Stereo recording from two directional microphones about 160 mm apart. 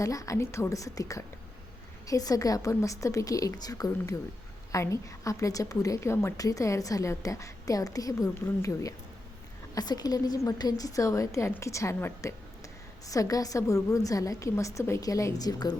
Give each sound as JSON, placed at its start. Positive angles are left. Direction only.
{"t": 0.0, "sound": "a woman's voice", "side_deg": 20}